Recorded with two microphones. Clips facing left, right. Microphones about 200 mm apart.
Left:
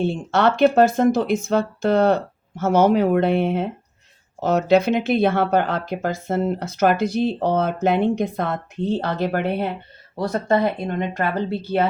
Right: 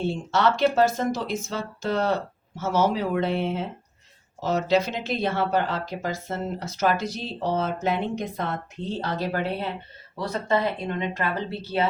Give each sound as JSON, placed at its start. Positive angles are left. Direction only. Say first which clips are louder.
{"t": 0.0, "sound": "speech", "louder": "left 4 dB", "side_deg": 60}